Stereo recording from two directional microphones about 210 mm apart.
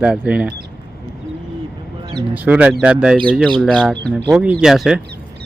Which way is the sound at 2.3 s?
5° right (ahead or behind).